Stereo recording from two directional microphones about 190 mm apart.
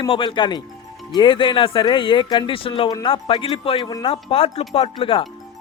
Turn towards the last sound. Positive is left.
turn(degrees=30)  # may be behind; listen again after turning